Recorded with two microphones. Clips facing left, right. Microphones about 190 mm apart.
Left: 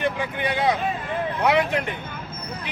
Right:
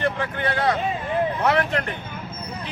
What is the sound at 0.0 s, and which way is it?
Speech, 15° left (ahead or behind).